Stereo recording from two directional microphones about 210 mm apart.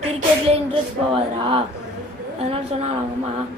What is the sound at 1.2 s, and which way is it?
Speech, 25° right (ahead or behind).